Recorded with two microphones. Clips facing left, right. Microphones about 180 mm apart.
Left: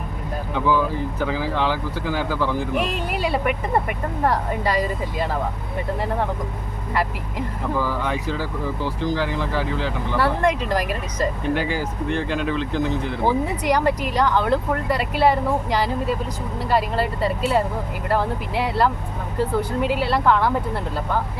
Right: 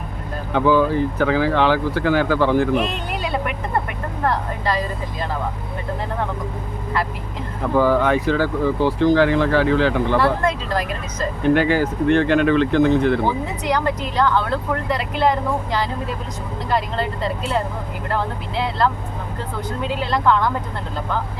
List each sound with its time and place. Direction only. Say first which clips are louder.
0.5 s speech: right 5 dB; 65° right (ahead or behind)
2.9 s speech: left 1 dB; 5° left (ahead or behind)
7.8 s speech: right 10 dB; 60° right (ahead or behind)
10.4 s speech: left 1 dB; 10° left (ahead or behind)
11.5 s speech: right 7 dB; 65° right (ahead or behind)
13.7 s speech: even; 10° left (ahead or behind)